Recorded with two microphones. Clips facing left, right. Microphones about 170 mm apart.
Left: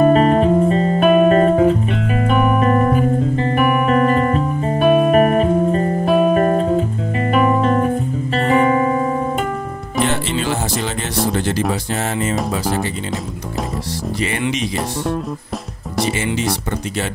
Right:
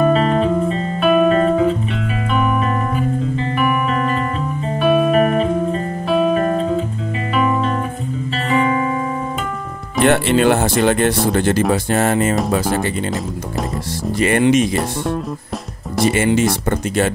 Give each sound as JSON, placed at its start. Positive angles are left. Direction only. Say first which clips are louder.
{"t": 0.0, "sound": "music", "louder": "left 3 dB", "side_deg": 45}
{"t": 10.0, "sound": "music", "louder": "right 9 dB", "side_deg": -60}
{"t": 11.3, "sound": "speech", "louder": "right 4 dB", "side_deg": -55}
{"t": 14.4, "sound": "speech", "louder": "right 10 dB", "side_deg": -50}